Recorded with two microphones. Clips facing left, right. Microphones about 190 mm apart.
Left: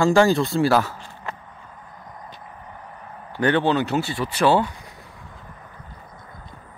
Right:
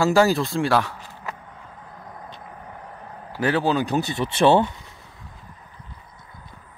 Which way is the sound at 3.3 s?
5° right (ahead or behind).